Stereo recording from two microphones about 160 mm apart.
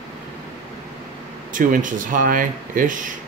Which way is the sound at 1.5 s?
55° right (ahead or behind).